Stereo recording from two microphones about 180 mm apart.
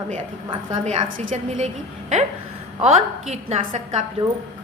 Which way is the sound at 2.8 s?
40° right (ahead or behind).